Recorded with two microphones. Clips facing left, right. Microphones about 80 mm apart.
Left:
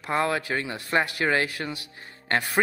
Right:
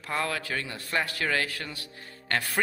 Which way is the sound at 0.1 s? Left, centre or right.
Left.